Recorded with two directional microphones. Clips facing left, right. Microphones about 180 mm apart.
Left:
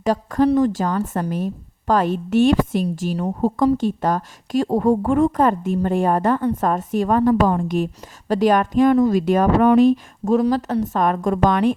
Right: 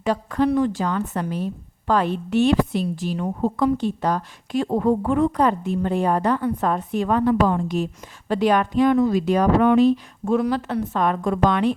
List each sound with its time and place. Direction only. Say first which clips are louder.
0.0 s a woman's voice: left 3 dB; 45° left (ahead or behind)